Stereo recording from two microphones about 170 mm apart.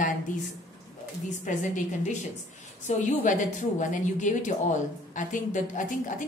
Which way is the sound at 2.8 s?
45° left (ahead or behind).